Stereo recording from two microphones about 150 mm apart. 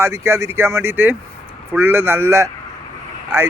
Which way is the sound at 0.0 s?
20° right (ahead or behind).